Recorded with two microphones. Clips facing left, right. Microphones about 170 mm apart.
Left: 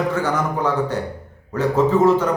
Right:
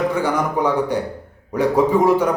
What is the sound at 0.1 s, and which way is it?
A man's voice, 15° right (ahead or behind).